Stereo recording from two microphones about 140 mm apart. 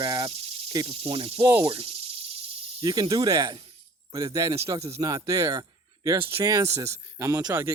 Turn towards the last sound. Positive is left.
turn(degrees=-20)  # may be behind; listen again after turning